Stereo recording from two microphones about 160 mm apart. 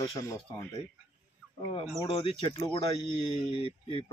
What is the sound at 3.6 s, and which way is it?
Speech, 35° left (ahead or behind).